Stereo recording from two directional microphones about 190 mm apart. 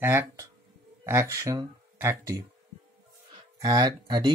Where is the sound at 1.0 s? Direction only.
15° right (ahead or behind).